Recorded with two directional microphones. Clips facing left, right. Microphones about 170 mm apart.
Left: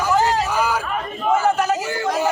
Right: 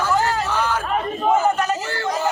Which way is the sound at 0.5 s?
10° left (ahead or behind).